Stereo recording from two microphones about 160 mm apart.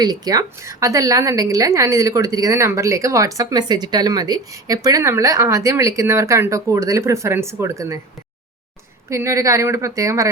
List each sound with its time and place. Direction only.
0.0 s a woman's voice: 25° right (ahead or behind)
9.0 s a woman's voice: 20° right (ahead or behind)